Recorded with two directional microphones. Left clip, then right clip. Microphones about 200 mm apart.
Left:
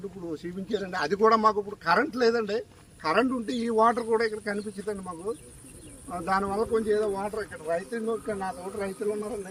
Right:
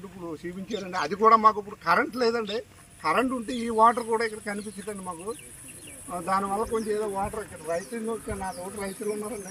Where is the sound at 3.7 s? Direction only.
Centre (ahead or behind).